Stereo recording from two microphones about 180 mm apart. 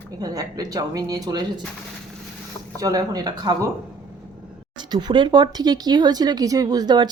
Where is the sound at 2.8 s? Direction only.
20° right (ahead or behind).